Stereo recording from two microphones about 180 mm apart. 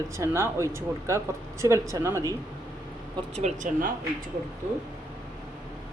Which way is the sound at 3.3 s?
40° right (ahead or behind).